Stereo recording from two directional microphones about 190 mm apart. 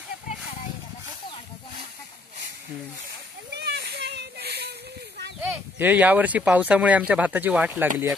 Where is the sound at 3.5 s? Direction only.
60° right (ahead or behind).